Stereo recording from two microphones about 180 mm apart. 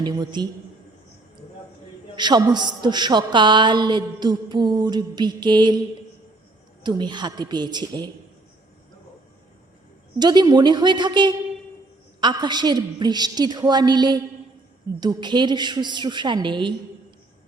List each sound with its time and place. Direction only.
0.0 s a woman's voice: 25° right (ahead or behind)
2.1 s a woman's voice: 25° right (ahead or behind)
6.8 s a woman's voice: 25° right (ahead or behind)
10.2 s a woman's voice: 25° right (ahead or behind)